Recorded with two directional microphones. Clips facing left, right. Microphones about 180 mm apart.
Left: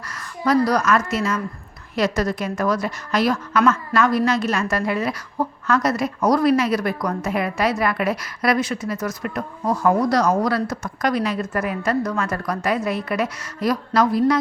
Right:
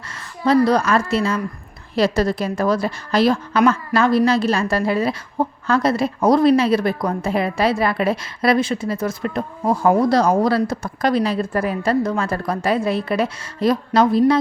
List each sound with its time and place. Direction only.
0.4 s a woman's voice: 25° right (ahead or behind)